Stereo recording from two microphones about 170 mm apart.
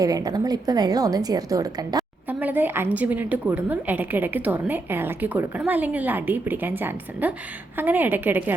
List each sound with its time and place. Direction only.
0.0 s a woman's voice: 20° right (ahead or behind)
2.4 s a woman's voice: 10° right (ahead or behind)